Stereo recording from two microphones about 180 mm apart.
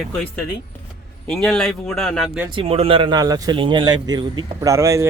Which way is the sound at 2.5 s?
30° right (ahead or behind).